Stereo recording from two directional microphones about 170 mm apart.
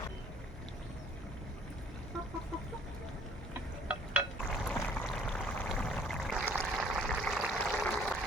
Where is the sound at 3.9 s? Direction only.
5° right (ahead or behind).